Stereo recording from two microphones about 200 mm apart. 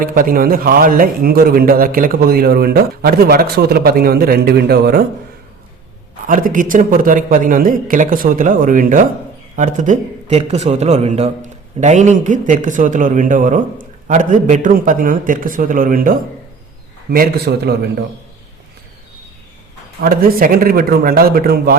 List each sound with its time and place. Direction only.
0.0 s a man's voice: 45° right (ahead or behind)
6.2 s a man's voice: 40° right (ahead or behind)
20.0 s a man's voice: 45° right (ahead or behind)